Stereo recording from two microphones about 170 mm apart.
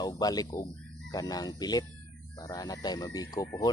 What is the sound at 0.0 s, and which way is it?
Speech, 25° left (ahead or behind).